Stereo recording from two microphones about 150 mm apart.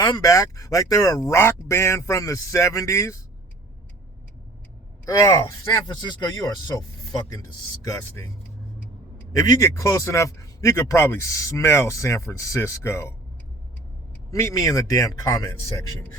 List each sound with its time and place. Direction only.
0.0 s a man's voice: 20° left (ahead or behind)
5.0 s a man's voice: 20° left (ahead or behind)
9.3 s a man's voice: 25° left (ahead or behind)
14.3 s a man's voice: 20° left (ahead or behind)